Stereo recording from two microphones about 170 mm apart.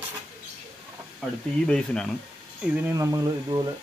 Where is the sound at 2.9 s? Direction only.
20° right (ahead or behind).